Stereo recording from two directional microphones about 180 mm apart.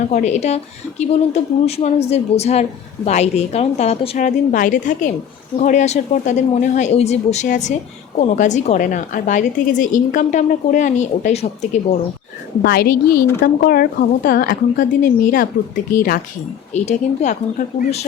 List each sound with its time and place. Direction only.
0.1 s a woman's voice: 40° left (ahead or behind)
12.6 s a woman's voice: 60° left (ahead or behind)
16.7 s speech: 40° left (ahead or behind)